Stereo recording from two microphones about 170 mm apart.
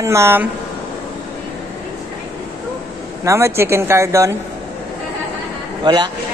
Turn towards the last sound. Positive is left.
turn(degrees=-25)  # may be behind; listen again after turning